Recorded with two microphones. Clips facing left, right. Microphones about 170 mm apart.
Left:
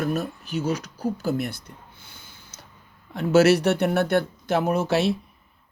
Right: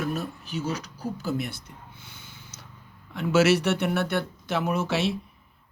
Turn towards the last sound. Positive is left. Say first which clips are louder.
# left 4 dB
turn(degrees=40)  # may be behind; listen again after turning